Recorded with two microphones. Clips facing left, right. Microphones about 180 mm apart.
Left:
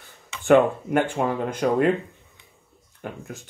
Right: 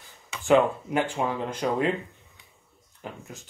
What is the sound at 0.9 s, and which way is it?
Speech, 55° left (ahead or behind).